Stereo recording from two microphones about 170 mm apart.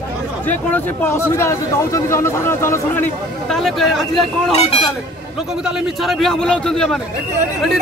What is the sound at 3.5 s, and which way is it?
A man's voice, centre (ahead or behind).